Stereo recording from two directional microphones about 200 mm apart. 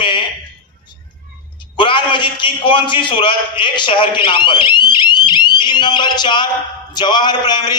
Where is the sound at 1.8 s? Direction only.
25° left (ahead or behind).